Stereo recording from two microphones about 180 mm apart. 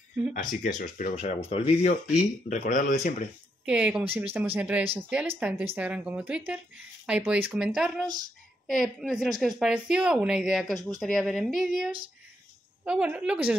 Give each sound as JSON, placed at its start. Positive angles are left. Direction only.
{"t": 0.3, "sound": "speech", "side_deg": 45}
{"t": 3.6, "sound": "speech", "side_deg": -5}